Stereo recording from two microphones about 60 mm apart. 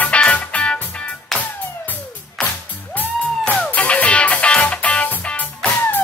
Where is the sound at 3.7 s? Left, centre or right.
Left.